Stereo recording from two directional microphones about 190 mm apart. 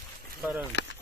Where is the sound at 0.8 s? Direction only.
70° left (ahead or behind).